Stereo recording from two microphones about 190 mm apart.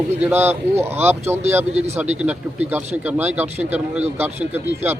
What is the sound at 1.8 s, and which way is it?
Speech, 35° right (ahead or behind).